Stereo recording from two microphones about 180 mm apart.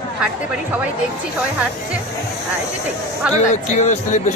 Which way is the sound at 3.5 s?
40° left (ahead or behind).